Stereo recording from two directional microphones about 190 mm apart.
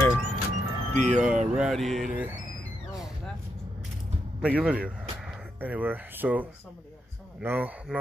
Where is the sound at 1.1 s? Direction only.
5° right (ahead or behind).